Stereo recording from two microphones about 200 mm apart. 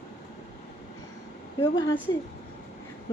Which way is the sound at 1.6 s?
25° left (ahead or behind).